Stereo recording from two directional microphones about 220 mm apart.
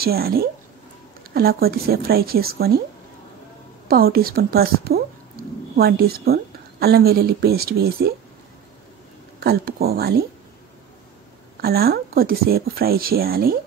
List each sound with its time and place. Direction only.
0.0 s a woman's voice: 45° right (ahead or behind)
3.9 s a woman's voice: 45° right (ahead or behind)
5.4 s a sound: 40° right (ahead or behind)
5.8 s a woman's voice: 45° right (ahead or behind)
9.4 s a woman's voice: 45° right (ahead or behind)
11.6 s a woman's voice: 45° right (ahead or behind)